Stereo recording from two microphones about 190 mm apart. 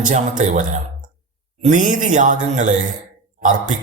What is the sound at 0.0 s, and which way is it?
Speech, 40° right (ahead or behind).